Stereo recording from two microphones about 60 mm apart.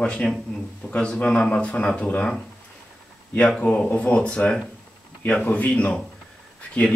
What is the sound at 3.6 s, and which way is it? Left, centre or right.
A man's voice, centre.